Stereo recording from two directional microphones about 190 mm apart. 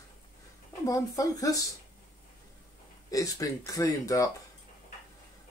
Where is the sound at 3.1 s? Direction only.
15° left (ahead or behind).